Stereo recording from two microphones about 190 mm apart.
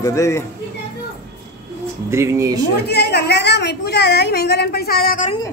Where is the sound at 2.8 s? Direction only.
60° left (ahead or behind).